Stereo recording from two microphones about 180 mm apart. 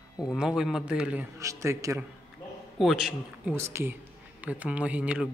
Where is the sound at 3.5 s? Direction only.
15° right (ahead or behind).